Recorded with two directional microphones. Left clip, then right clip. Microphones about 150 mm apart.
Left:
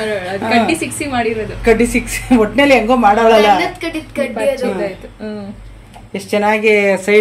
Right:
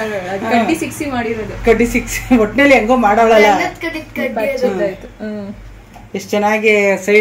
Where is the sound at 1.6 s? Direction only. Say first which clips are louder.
Even; 25° left (ahead or behind).